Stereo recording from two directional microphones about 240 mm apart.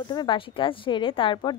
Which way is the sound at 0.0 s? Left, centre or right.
Centre.